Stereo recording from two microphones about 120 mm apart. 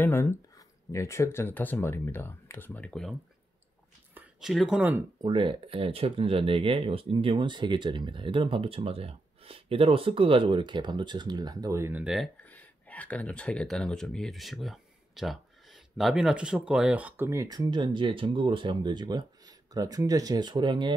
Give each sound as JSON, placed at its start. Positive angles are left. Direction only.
{"t": 0.0, "sound": "speech", "side_deg": 20}
{"t": 4.4, "sound": "speech", "side_deg": -5}
{"t": 5.2, "sound": "speech", "side_deg": -45}
{"t": 12.0, "sound": "speech", "side_deg": -5}
{"t": 12.4, "sound": "speech", "side_deg": 10}
{"t": 17.3, "sound": "speech", "side_deg": -30}